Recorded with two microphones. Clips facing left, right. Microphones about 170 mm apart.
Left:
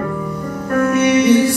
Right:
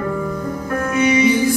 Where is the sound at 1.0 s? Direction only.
75° left (ahead or behind).